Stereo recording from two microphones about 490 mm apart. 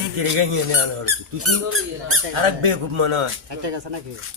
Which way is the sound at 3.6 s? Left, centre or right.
Right.